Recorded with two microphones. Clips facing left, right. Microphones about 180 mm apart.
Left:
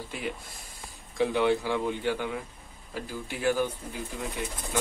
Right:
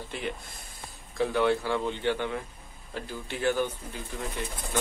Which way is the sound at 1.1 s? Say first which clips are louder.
Left 1 dB; 15° left (ahead or behind).